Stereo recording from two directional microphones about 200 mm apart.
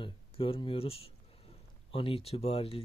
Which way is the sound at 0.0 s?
25° left (ahead or behind).